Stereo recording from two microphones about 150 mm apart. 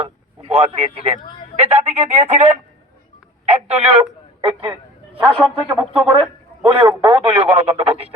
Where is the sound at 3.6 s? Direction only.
40° right (ahead or behind).